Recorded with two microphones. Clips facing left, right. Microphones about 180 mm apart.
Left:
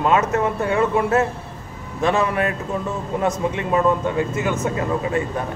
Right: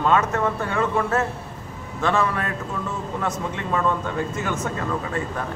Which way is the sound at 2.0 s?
20° left (ahead or behind).